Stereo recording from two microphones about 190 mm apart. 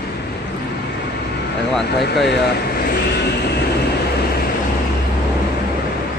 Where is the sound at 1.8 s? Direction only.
60° left (ahead or behind).